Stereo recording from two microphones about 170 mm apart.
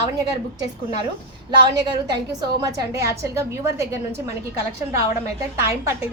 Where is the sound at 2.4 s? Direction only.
20° right (ahead or behind).